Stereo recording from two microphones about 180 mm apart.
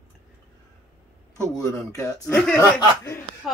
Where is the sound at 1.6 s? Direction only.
20° left (ahead or behind).